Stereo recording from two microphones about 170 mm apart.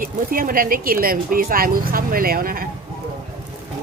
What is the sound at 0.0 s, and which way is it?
Speech, 55° right (ahead or behind).